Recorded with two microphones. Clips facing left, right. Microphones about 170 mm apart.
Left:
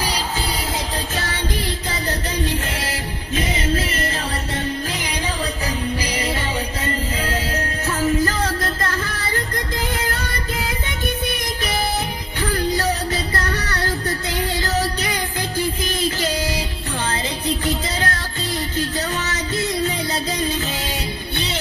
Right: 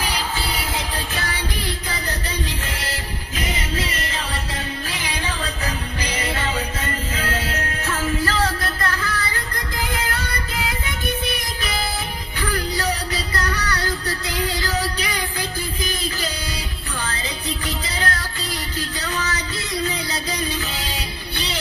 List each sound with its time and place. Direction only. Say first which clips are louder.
1.1 s music: left 2 dB; 45° left (ahead or behind)
6.0 s music: left 1 dB; 35° left (ahead or behind)
8.3 s music: even; 20° left (ahead or behind)
12.4 s music: left 4 dB; 25° left (ahead or behind)
17.6 s music: left 3 dB; 25° left (ahead or behind)